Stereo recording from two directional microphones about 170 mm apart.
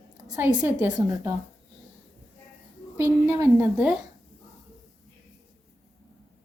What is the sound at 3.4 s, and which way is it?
Speech, 10° right (ahead or behind).